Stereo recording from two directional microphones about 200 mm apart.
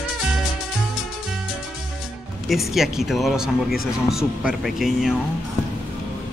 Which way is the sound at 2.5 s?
Centre (ahead or behind).